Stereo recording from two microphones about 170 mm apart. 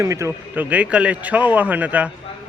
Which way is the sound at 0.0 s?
15° right (ahead or behind).